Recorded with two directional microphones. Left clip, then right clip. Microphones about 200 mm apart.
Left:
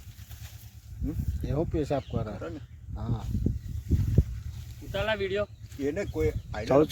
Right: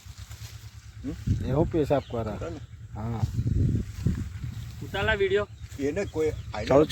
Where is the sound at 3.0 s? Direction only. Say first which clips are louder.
Right 3 dB; 35° right (ahead or behind).